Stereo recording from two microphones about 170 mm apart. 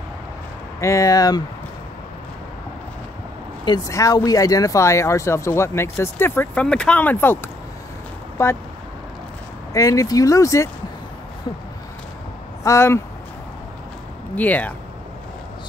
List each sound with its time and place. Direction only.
0.7 s speech: 20° left (ahead or behind)
3.6 s speech: 20° left (ahead or behind)
9.8 s speech: 20° left (ahead or behind)
12.6 s speech: 15° left (ahead or behind)
14.3 s speech: 10° left (ahead or behind)